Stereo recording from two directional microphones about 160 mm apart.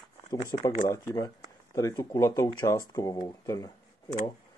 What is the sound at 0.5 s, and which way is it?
Speech, 25° left (ahead or behind).